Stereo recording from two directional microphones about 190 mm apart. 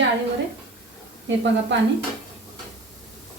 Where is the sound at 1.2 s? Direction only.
70° right (ahead or behind).